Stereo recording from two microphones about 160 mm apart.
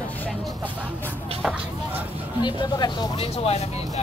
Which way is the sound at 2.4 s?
25° left (ahead or behind).